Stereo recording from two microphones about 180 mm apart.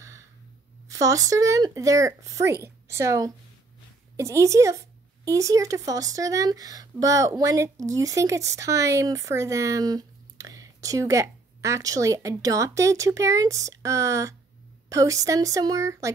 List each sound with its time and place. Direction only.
0.8 s speech: 20° right (ahead or behind)